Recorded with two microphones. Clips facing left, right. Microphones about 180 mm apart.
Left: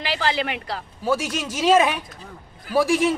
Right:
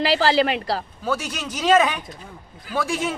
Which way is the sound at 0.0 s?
35° right (ahead or behind).